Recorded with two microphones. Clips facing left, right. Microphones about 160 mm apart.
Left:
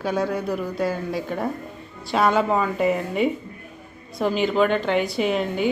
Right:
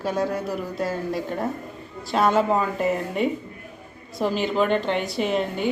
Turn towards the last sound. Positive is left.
turn(degrees=0)  # may be behind; listen again after turning